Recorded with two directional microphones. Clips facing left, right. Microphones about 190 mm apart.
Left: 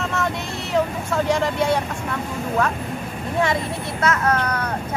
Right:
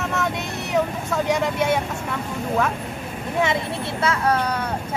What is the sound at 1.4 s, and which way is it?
Speech, 20° right (ahead or behind).